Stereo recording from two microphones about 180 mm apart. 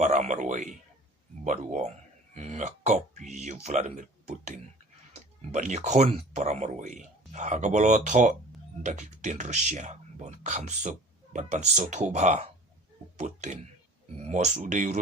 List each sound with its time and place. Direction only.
0.0 s speech: 40° right (ahead or behind)